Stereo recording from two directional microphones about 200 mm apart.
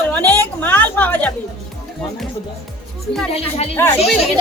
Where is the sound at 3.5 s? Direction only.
30° left (ahead or behind).